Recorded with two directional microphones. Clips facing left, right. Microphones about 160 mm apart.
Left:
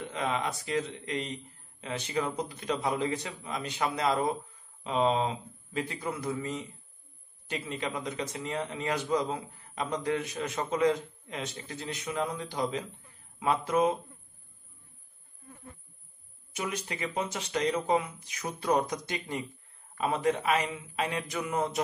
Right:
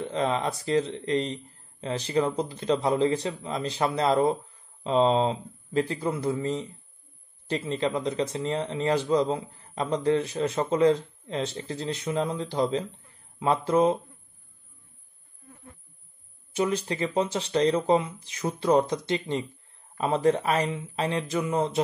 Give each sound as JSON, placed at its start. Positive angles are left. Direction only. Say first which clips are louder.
{"t": 0.0, "sound": "a man's voice", "louder": "right 5 dB", "side_deg": -30}
{"t": 16.5, "sound": "a man's voice", "louder": "right 9 dB", "side_deg": -30}